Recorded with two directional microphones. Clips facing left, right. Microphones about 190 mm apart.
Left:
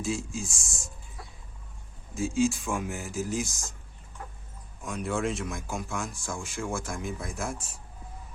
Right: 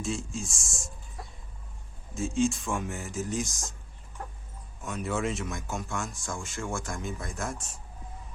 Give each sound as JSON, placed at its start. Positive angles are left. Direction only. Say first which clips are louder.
{"t": 0.0, "sound": "speech", "louder": "left 1 dB", "side_deg": 0}
{"t": 2.1, "sound": "speech", "louder": "left 1 dB", "side_deg": 0}
{"t": 4.8, "sound": "speech", "louder": "left 1 dB", "side_deg": 0}